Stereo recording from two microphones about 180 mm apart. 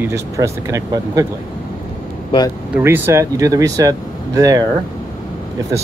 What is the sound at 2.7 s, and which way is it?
Speech, 15° right (ahead or behind).